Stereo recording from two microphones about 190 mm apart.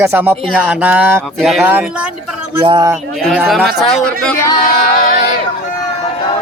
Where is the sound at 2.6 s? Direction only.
25° right (ahead or behind).